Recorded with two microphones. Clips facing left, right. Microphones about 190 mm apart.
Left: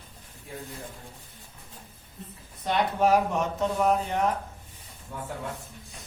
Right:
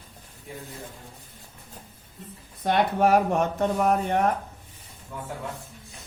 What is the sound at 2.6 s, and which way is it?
Mantra, 55° right (ahead or behind).